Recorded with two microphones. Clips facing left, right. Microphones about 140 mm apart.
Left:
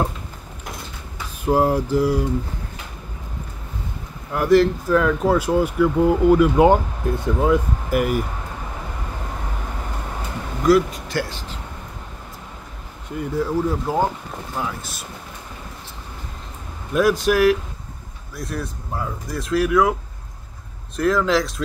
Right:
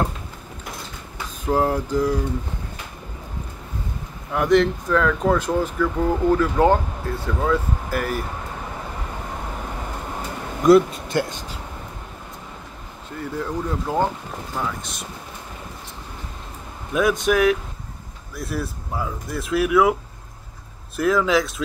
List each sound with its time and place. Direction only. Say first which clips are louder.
1.4 s speech: left 3 dB; 10° left (ahead or behind)
4.3 s speech: left 2 dB; 5° left (ahead or behind)
10.7 s speech: right 3 dB; 25° right (ahead or behind)
13.2 s speech: left 5 dB; 5° left (ahead or behind)
16.9 s speech: left 2 dB; centre (ahead or behind)